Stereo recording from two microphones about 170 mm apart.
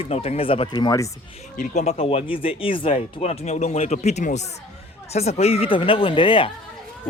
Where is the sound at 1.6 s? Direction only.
40° left (ahead or behind).